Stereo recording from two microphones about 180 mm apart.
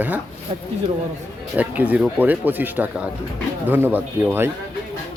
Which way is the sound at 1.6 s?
10° right (ahead or behind).